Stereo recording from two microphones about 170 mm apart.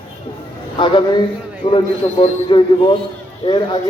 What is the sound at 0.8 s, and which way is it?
A man's voice, 30° left (ahead or behind).